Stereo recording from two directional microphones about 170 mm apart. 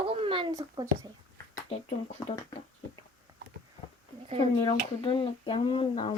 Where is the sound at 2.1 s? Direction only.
25° left (ahead or behind).